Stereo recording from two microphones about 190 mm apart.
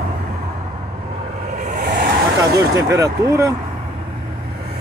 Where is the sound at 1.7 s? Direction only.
45° right (ahead or behind).